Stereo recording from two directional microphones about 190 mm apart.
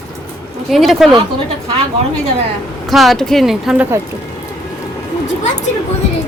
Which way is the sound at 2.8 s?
Centre (ahead or behind).